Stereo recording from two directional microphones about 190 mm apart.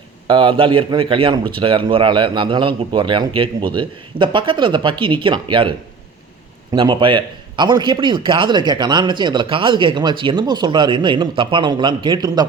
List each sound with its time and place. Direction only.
0.3 s a man's voice: 25° right (ahead or behind)
6.7 s a man's voice: 25° right (ahead or behind)